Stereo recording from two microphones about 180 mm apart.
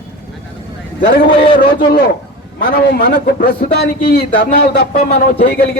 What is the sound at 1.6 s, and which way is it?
A man's voice, 55° left (ahead or behind).